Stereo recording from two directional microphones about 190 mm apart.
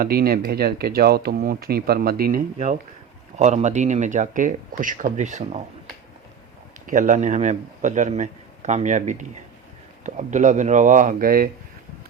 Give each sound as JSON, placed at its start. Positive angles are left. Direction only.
{"t": 0.0, "sound": "speech", "side_deg": -55}
{"t": 3.3, "sound": "a man's voice", "side_deg": -35}
{"t": 6.8, "sound": "a man's voice", "side_deg": -45}